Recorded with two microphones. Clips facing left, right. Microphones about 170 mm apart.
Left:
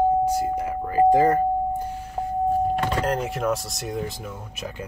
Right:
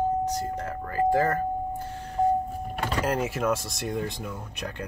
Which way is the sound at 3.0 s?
5° right (ahead or behind).